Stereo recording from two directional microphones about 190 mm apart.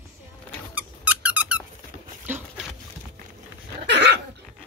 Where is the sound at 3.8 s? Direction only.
60° right (ahead or behind).